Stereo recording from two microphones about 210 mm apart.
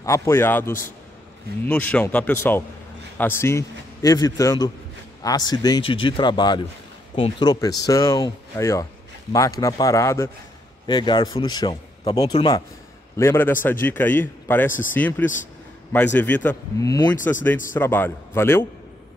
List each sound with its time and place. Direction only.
0.0 s a man's voice: 15° left (ahead or behind)
14.7 s speech: 40° left (ahead or behind)
15.0 s a man's voice: 10° left (ahead or behind)